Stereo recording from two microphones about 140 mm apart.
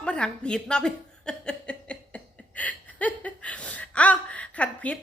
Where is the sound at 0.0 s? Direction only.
5° left (ahead or behind).